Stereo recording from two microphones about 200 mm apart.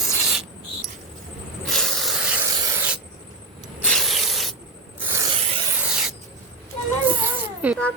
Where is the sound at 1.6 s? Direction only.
Centre (ahead or behind).